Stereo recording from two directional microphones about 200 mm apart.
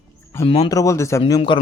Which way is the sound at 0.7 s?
15° left (ahead or behind).